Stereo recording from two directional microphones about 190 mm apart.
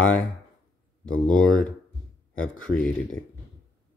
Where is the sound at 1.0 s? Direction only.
5° left (ahead or behind).